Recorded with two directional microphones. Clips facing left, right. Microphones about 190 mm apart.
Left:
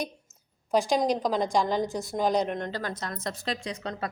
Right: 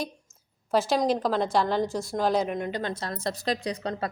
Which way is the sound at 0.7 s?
Centre (ahead or behind).